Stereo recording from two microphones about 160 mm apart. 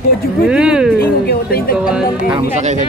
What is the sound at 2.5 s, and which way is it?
Speech, 45° right (ahead or behind).